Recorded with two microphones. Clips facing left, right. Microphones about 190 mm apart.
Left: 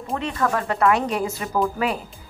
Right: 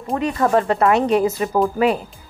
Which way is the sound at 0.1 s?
35° right (ahead or behind).